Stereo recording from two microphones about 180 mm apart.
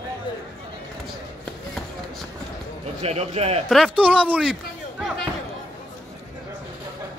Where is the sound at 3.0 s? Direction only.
35° right (ahead or behind).